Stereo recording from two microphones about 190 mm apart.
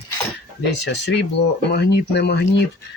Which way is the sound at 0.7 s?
65° left (ahead or behind).